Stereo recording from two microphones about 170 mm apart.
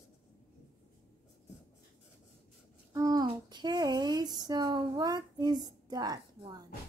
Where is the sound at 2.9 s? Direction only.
20° right (ahead or behind).